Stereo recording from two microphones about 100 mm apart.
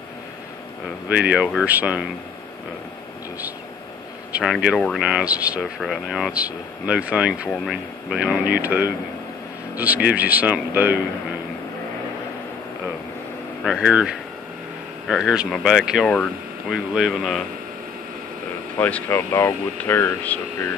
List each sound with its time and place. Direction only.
1.0 s speech: 15° right (ahead or behind)
4.5 s speech: 10° right (ahead or behind)
4.7 s speech: 5° left (ahead or behind)
5.0 s speech: 10° right (ahead or behind)
5.6 s speech: centre (ahead or behind)
6.3 s speech: 15° right (ahead or behind)
7.4 s speech: centre (ahead or behind)
8.2 s speech: 15° right (ahead or behind)
13.7 s speech: 10° right (ahead or behind)
16.1 s speech: 5° left (ahead or behind)
16.9 s speech: 5° right (ahead or behind)
18.8 s speech: 15° left (ahead or behind)